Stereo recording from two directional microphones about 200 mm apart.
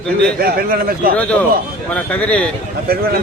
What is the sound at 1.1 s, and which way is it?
Speech, 5° left (ahead or behind).